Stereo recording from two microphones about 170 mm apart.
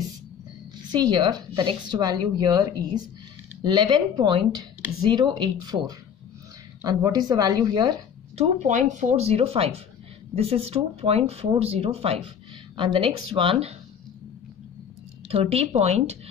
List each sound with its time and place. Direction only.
0.9 s a woman's voice: 25° right (ahead or behind)
8.4 s speech: 45° right (ahead or behind)
15.2 s speech: 35° right (ahead or behind)